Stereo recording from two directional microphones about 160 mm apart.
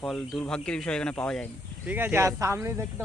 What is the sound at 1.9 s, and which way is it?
Speech, 10° right (ahead or behind).